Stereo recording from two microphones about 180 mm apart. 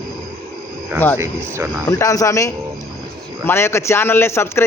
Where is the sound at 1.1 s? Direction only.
15° right (ahead or behind).